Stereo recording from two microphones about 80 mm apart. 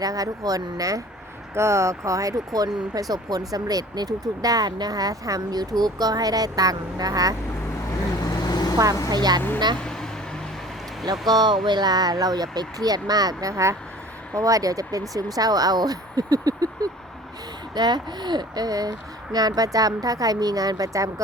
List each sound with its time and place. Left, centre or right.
0.0 s speech: right
8.2 s vehicle: left
9.0 s speech: right
9.8 s vehicle: centre
11.3 s speech: right
17.7 s speech: right